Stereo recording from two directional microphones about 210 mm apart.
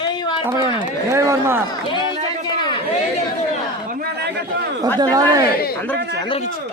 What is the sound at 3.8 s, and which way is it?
Speech, 45° right (ahead or behind).